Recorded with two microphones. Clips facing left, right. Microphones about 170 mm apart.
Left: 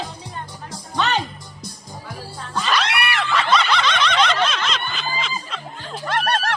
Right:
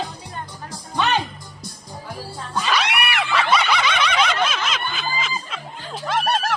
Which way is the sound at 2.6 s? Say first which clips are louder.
Even; 10° right (ahead or behind).